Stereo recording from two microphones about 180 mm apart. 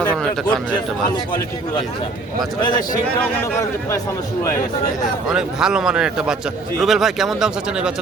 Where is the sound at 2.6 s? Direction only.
25° left (ahead or behind).